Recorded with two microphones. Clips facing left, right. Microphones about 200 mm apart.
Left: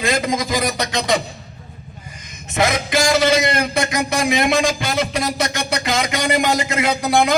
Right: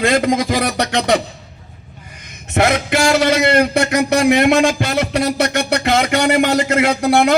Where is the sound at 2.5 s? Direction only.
65° right (ahead or behind).